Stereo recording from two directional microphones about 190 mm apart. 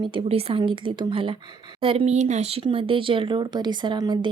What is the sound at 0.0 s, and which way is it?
Speech, 25° right (ahead or behind).